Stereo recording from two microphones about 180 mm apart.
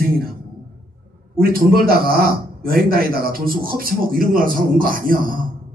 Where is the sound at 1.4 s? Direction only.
55° right (ahead or behind).